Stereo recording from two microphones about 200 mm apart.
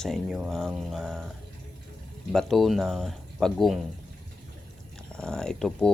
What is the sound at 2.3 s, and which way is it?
Speech, centre (ahead or behind).